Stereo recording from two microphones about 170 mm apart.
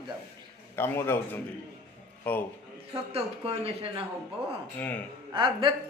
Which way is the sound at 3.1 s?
35° right (ahead or behind).